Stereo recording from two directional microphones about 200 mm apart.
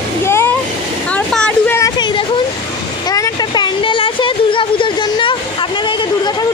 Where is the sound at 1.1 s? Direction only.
5° left (ahead or behind).